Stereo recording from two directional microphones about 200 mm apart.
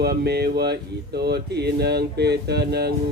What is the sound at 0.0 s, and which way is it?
Speech, 55° right (ahead or behind).